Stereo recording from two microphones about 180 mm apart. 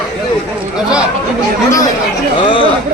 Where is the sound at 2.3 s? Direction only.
25° left (ahead or behind).